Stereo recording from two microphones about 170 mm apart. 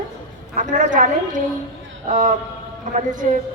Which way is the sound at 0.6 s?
50° right (ahead or behind).